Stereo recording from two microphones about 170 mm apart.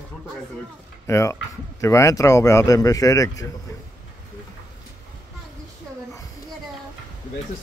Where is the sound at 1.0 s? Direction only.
15° left (ahead or behind).